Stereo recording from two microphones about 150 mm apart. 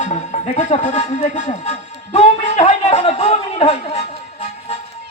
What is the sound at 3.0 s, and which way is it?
Music, 40° left (ahead or behind).